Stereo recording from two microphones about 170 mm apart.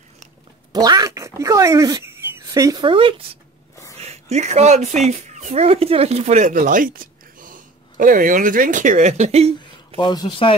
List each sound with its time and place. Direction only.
0.7 s speech: 25° right (ahead or behind)
9.9 s speech: 25° left (ahead or behind)